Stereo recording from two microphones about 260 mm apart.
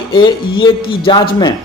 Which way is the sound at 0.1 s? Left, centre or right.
Centre.